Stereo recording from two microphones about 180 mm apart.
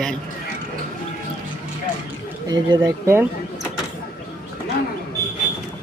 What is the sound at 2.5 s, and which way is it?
Speech, 20° right (ahead or behind).